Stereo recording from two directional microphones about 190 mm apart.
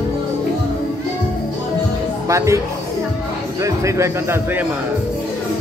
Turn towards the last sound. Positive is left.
turn(degrees=-15)  # may be behind; listen again after turning